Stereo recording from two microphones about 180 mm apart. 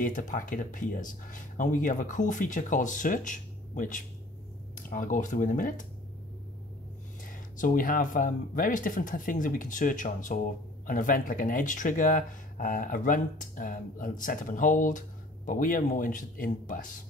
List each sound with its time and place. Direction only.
0.0 s speech: 45° left (ahead or behind)
7.2 s speech: 50° left (ahead or behind)